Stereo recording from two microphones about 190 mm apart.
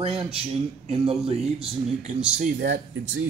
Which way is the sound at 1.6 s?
40° right (ahead or behind).